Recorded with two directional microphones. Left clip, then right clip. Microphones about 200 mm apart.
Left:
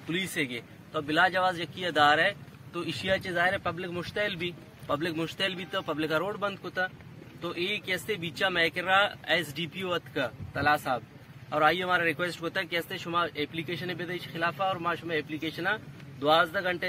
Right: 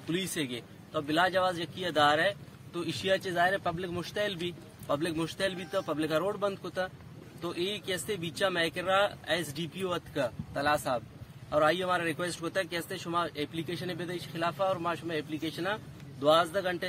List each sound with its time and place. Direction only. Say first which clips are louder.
0.1 s a man's voice: left 3 dB; 15° right (ahead or behind)